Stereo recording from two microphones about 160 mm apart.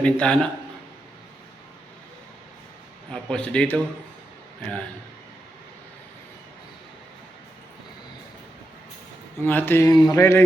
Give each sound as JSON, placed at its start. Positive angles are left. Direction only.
{"t": 0.0, "sound": "a man's voice", "side_deg": 5}
{"t": 3.1, "sound": "speech", "side_deg": 5}
{"t": 9.4, "sound": "speech", "side_deg": 10}